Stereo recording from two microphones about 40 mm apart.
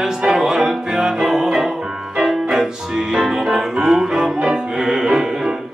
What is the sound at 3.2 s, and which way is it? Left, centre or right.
Music, centre.